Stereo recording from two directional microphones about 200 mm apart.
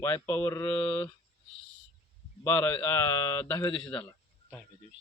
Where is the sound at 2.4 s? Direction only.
10° left (ahead or behind).